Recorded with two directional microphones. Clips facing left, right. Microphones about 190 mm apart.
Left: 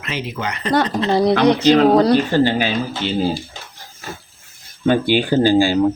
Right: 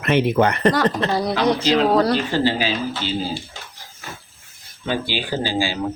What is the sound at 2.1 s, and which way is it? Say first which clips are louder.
Speech: left 5 dB; 50° left (ahead or behind).